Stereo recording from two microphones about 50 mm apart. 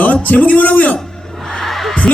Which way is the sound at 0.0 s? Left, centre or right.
Left.